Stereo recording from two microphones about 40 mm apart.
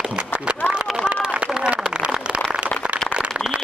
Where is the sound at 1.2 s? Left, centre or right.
Right.